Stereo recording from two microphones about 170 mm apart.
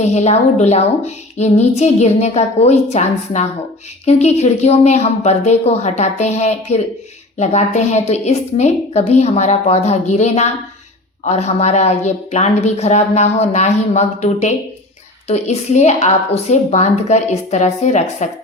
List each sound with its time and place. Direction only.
0.0 s female singing: 40° left (ahead or behind)